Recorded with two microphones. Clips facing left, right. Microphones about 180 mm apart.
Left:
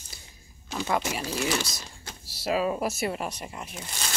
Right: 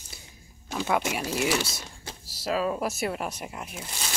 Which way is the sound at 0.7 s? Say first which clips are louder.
Right 1 dB; 5° right (ahead or behind).